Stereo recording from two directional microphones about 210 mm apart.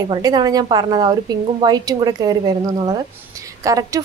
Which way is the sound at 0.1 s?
20° right (ahead or behind).